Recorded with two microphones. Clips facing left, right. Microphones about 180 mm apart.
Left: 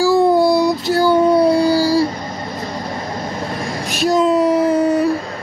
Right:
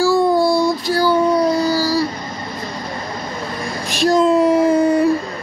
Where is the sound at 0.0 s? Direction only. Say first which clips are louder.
Left 2 dB; 20° left (ahead or behind).